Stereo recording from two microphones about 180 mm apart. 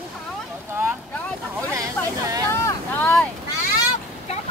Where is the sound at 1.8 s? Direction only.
20° right (ahead or behind).